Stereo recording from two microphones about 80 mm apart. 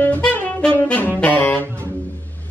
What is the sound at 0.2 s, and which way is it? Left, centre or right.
Saxophone, left.